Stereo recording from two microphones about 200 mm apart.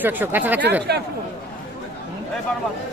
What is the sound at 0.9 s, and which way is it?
Speech, 55° right (ahead or behind).